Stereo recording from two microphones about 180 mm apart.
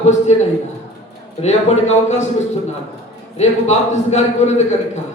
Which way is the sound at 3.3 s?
35° left (ahead or behind).